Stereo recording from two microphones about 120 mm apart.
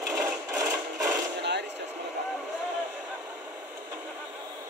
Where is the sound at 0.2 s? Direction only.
20° right (ahead or behind).